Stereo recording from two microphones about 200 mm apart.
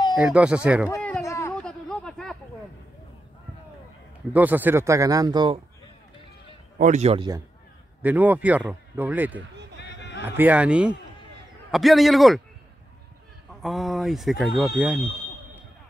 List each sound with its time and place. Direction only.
0.1 s speech: 5° right (ahead or behind)
0.8 s a sound: 10° left (ahead or behind)
1.5 s a sound: 5° left (ahead or behind)
4.3 s speech: 10° right (ahead or behind)
6.8 s speech: 35° right (ahead or behind)
8.0 s speech: 10° right (ahead or behind)
9.8 s a sound: 60° left (ahead or behind)
10.2 s speech: 10° right (ahead or behind)
13.6 s speech: centre (ahead or behind)